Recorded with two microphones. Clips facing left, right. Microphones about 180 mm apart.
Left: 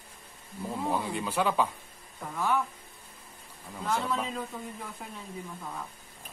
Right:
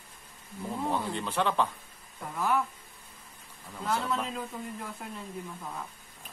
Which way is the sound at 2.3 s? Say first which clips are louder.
Even; 5° right (ahead or behind).